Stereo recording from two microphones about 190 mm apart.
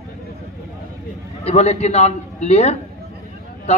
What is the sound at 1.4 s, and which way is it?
A man's voice, 35° left (ahead or behind).